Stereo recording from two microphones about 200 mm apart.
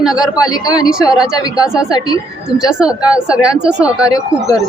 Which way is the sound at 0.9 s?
5° right (ahead or behind).